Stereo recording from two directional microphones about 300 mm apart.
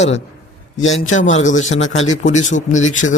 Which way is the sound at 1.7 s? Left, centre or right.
Left.